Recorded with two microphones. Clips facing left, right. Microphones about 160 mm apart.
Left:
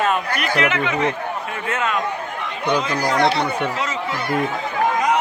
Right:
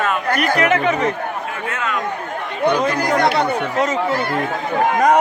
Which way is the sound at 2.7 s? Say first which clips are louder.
Right 1 dB; 50° right (ahead or behind).